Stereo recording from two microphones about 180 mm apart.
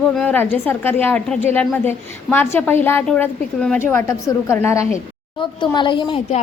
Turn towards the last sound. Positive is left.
turn(degrees=25)  # may be behind; listen again after turning